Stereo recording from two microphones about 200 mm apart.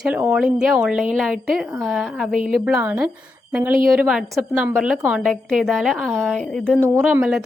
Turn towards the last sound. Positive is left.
turn(degrees=-15)  # may be behind; listen again after turning